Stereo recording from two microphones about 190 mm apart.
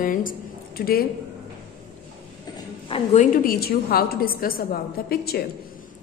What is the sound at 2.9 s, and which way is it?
Speech, 35° left (ahead or behind).